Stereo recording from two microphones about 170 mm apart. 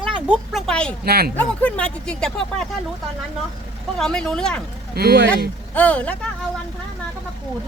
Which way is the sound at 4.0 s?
5° left (ahead or behind).